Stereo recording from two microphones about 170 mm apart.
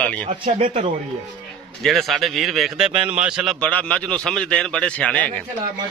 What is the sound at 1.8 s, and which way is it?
Speech, centre (ahead or behind).